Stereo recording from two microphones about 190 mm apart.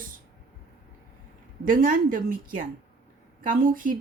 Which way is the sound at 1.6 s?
45° right (ahead or behind).